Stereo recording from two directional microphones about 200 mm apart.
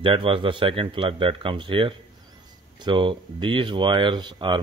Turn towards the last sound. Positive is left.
turn(degrees=-25)  # may be behind; listen again after turning